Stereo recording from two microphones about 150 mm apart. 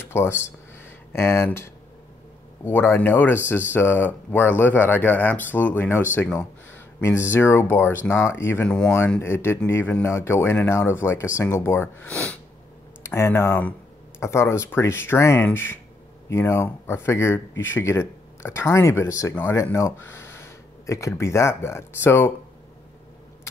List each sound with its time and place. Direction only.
0.0 s speech: 15° left (ahead or behind)